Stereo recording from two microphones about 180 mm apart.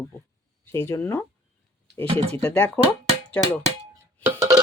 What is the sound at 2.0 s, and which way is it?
Speech, 35° right (ahead or behind).